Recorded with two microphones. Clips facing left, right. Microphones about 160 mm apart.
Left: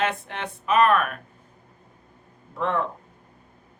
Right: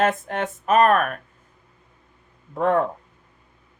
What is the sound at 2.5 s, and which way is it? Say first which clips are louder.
Speech: right 6 dB; 45° right (ahead or behind).